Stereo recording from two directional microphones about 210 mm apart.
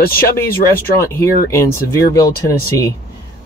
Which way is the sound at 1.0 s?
15° left (ahead or behind).